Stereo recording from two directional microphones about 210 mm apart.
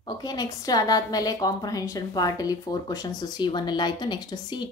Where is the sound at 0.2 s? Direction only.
20° left (ahead or behind).